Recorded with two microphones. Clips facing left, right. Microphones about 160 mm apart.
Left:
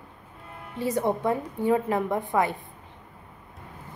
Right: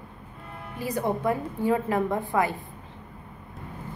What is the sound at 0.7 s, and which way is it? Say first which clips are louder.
A woman's voice: left 2 dB; 25° left (ahead or behind).